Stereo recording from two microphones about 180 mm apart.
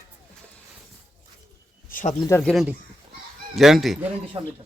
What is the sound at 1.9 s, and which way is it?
Speech, 45° left (ahead or behind).